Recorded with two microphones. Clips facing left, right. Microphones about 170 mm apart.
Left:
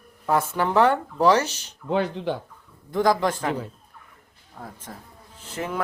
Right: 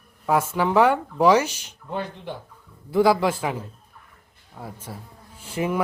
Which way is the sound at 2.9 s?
10° right (ahead or behind).